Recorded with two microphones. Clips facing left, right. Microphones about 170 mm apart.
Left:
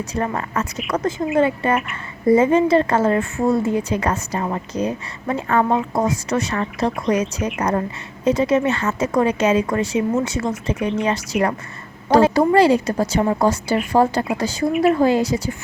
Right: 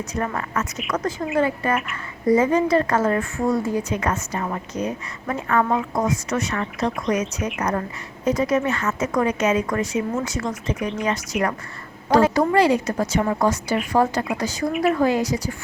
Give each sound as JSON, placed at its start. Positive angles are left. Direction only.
{"t": 0.3, "sound": "a woman's voice", "side_deg": 30}
{"t": 14.7, "sound": "speech", "side_deg": 0}
{"t": 14.9, "sound": "a woman's voice", "side_deg": 30}